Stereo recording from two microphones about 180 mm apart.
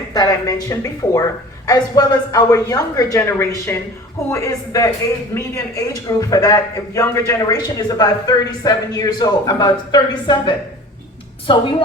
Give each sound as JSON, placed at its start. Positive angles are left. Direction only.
{"t": 0.1, "sound": "a man's voice", "side_deg": 20}